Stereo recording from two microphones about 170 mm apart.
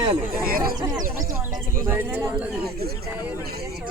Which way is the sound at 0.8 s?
20° right (ahead or behind).